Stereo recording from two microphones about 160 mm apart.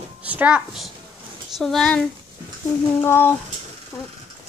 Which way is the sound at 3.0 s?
15° left (ahead or behind).